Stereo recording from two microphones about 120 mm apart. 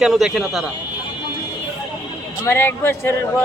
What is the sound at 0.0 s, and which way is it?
Speech, 5° right (ahead or behind).